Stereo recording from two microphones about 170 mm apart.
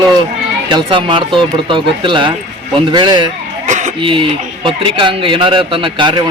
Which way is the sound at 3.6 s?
45° right (ahead or behind).